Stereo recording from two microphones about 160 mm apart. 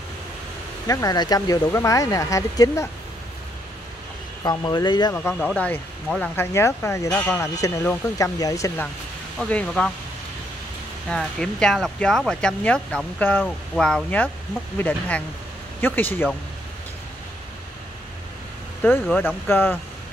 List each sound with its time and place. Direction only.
0.8 s speech: 25° left (ahead or behind)
4.4 s speech: 25° left (ahead or behind)
5.1 s speech: 10° left (ahead or behind)
9.4 s speech: 5° left (ahead or behind)
11.1 s speech: 5° left (ahead or behind)
18.8 s speech: 15° left (ahead or behind)